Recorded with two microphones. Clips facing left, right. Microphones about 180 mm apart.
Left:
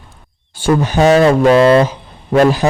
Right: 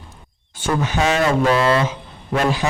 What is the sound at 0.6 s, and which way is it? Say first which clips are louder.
Speech: left 8 dB; 35° left (ahead or behind).